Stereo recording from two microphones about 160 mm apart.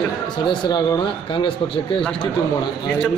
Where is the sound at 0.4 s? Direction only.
25° left (ahead or behind).